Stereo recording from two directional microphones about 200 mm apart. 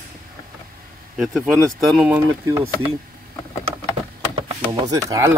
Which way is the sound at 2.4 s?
15° right (ahead or behind).